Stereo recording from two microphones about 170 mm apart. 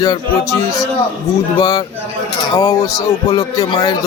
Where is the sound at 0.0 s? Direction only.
20° left (ahead or behind).